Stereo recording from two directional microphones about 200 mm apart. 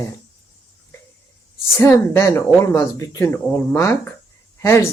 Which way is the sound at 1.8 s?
10° left (ahead or behind).